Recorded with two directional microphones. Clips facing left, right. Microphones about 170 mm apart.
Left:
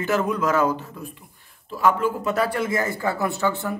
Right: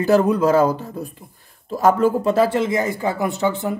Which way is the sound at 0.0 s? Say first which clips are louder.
Right 7 dB; 35° right (ahead or behind).